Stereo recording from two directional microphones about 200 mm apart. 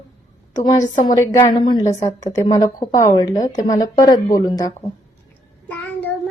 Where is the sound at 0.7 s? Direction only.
15° left (ahead or behind).